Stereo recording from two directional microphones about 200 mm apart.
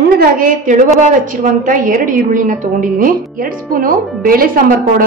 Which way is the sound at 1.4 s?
40° right (ahead or behind).